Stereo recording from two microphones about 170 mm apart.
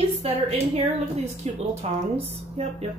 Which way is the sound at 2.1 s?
35° right (ahead or behind).